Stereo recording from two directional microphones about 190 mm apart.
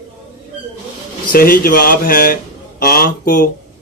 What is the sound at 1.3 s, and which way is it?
Mantra, 50° left (ahead or behind).